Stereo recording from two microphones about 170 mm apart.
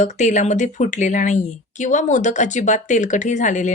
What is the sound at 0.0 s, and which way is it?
Speech, 45° left (ahead or behind).